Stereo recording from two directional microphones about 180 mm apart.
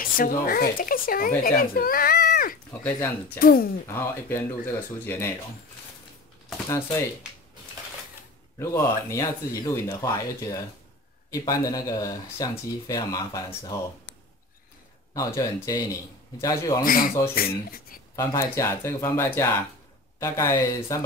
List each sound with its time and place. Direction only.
0.0 s speech: 50° left (ahead or behind)
2.7 s speech: 10° left (ahead or behind)
3.3 s speech: 55° left (ahead or behind)
3.8 s speech: 15° left (ahead or behind)
8.5 s speech: 15° left (ahead or behind)
15.1 s speech: 20° left (ahead or behind)
16.8 s speech: 50° left (ahead or behind)
18.1 s speech: 15° left (ahead or behind)